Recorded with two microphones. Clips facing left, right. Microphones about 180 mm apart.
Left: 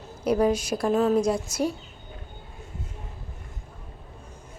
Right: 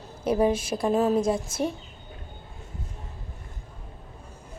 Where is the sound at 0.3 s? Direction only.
Centre (ahead or behind).